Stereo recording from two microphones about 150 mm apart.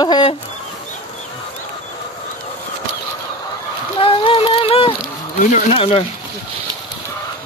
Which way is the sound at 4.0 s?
35° left (ahead or behind).